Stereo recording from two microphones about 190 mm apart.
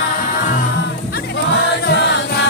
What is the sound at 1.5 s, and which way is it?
Choir, 65° left (ahead or behind).